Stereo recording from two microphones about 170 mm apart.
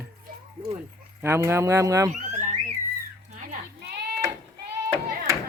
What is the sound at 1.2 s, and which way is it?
Speech, 15° right (ahead or behind).